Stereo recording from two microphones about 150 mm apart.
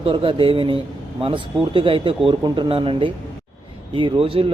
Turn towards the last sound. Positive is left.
turn(degrees=-35)  # may be behind; listen again after turning